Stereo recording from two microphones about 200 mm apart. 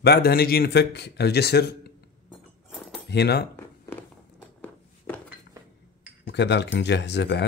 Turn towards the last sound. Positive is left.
turn(degrees=60)  # may be behind; listen again after turning